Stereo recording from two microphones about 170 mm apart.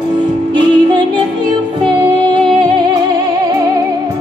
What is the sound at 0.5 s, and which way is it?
Music, 25° right (ahead or behind).